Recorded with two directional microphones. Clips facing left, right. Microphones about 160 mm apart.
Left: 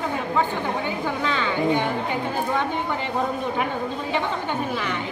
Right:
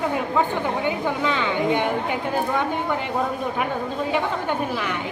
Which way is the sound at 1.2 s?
15° right (ahead or behind).